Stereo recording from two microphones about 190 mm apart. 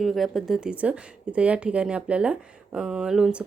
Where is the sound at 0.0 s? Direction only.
Centre (ahead or behind).